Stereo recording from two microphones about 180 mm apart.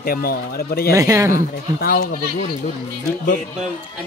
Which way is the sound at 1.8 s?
55° left (ahead or behind).